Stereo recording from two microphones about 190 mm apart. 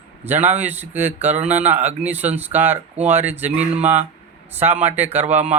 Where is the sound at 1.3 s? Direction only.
35° right (ahead or behind).